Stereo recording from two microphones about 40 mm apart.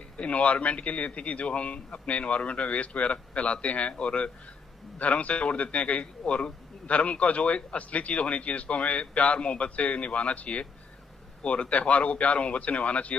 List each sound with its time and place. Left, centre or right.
0.2 s a man's voice: left
11.7 s a man's voice: left